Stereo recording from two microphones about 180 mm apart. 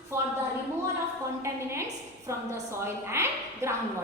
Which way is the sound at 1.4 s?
15° right (ahead or behind).